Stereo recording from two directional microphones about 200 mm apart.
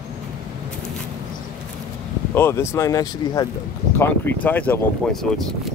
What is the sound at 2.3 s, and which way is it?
Speech, 10° left (ahead or behind).